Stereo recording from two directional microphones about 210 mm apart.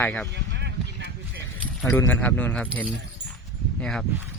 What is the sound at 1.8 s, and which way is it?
A man's voice, 10° left (ahead or behind).